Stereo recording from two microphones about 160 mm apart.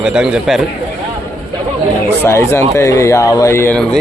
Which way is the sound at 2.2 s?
15° left (ahead or behind).